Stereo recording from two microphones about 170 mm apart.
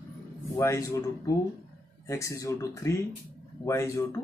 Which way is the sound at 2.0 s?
15° left (ahead or behind).